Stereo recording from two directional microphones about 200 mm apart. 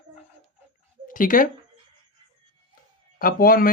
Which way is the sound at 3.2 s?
45° left (ahead or behind).